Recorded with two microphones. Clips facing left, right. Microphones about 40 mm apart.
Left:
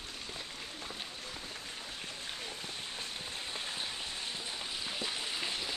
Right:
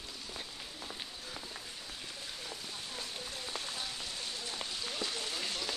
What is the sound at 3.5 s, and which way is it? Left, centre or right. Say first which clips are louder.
Rain on surface: left 1 dB; left.